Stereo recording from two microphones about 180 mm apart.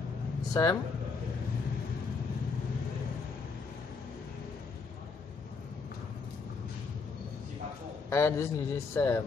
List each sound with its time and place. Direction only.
0.5 s speech: 20° left (ahead or behind)
8.1 s a man's voice: 15° left (ahead or behind)